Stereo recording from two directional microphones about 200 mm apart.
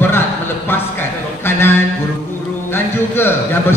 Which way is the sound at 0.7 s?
10° left (ahead or behind).